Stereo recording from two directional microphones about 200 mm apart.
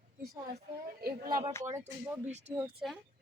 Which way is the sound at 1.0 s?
45° right (ahead or behind).